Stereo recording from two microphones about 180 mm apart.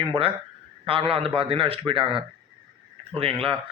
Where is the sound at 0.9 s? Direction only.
30° right (ahead or behind).